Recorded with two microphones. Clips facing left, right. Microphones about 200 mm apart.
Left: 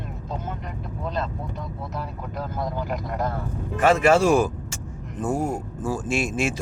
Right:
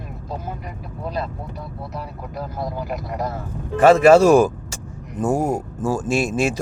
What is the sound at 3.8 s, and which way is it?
Speech, 35° right (ahead or behind).